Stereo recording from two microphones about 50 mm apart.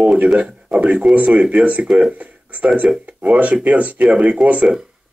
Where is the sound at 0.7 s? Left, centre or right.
Centre.